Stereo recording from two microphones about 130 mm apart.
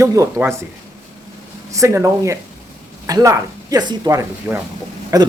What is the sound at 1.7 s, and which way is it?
Speech, 25° right (ahead or behind).